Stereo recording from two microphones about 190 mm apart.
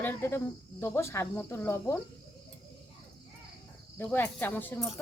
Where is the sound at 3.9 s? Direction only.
10° left (ahead or behind).